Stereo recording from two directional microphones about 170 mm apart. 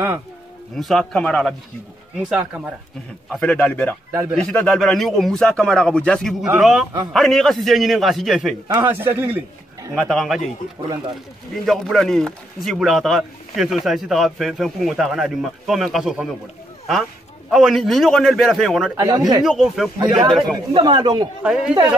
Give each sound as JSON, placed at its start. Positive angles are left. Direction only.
{"t": 0.7, "sound": "a man's voice", "side_deg": 0}
{"t": 4.1, "sound": "speech", "side_deg": -10}
{"t": 4.4, "sound": "a man's voice", "side_deg": 5}
{"t": 8.8, "sound": "a man's voice", "side_deg": -10}
{"t": 9.9, "sound": "a man's voice", "side_deg": 0}
{"t": 11.5, "sound": "a man's voice", "side_deg": 0}
{"t": 18.9, "sound": "speech", "side_deg": -25}
{"t": 19.4, "sound": "a man's voice", "side_deg": 0}
{"t": 20.0, "sound": "speech", "side_deg": -25}
{"t": 21.4, "sound": "a man's voice", "side_deg": -5}